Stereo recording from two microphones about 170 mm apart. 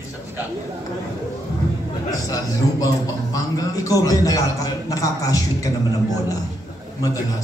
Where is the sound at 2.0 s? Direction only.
20° left (ahead or behind).